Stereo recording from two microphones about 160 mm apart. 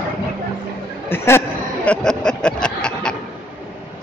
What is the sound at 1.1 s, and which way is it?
Chatter, 15° left (ahead or behind).